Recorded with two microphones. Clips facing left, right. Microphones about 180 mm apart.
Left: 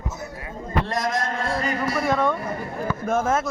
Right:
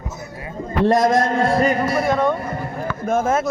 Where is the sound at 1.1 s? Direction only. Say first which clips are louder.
Right 9 dB; 55° right (ahead or behind).